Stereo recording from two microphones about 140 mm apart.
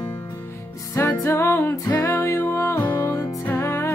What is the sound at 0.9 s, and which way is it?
Music, 20° left (ahead or behind).